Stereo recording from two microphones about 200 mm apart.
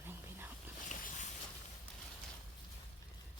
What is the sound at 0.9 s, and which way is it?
Boat, 40° left (ahead or behind).